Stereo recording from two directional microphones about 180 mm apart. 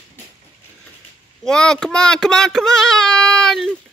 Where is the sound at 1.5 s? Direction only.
5° left (ahead or behind).